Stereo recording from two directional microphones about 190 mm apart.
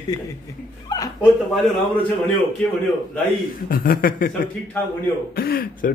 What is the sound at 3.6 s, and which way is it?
Speech, 50° left (ahead or behind).